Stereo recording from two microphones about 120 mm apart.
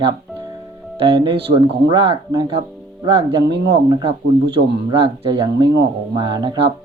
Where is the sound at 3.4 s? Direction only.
35° right (ahead or behind).